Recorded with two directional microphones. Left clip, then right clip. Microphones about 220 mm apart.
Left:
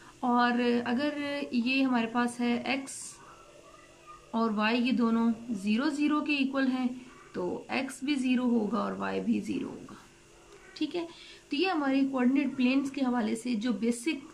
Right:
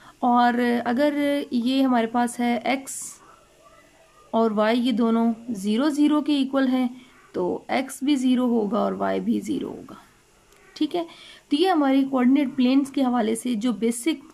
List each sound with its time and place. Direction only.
0.2 s a woman's voice: 35° right (ahead or behind)
4.3 s a woman's voice: 30° right (ahead or behind)
10.7 s a woman's voice: 30° right (ahead or behind)